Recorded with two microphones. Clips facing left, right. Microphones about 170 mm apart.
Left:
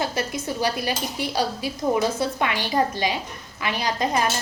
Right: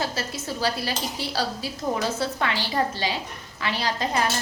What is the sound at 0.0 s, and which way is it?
A woman's voice, 15° left (ahead or behind).